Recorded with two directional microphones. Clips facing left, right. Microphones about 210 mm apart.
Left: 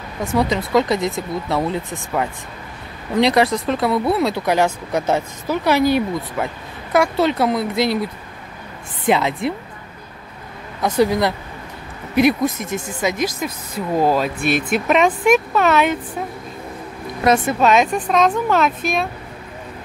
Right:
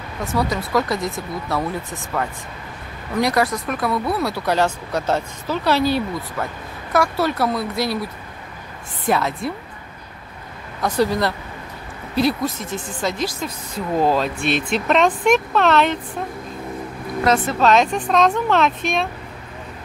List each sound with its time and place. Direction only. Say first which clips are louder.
0.2 s speech: left 3 dB; 20° left (ahead or behind)
10.8 s speech: left 3 dB; 15° left (ahead or behind)
17.2 s speech: left 2 dB; 15° left (ahead or behind)